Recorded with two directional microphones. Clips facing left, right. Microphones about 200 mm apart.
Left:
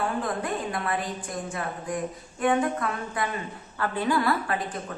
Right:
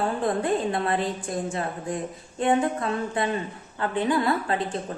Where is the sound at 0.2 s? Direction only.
25° right (ahead or behind).